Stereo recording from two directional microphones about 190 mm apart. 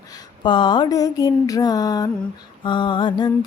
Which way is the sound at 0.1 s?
25° left (ahead or behind).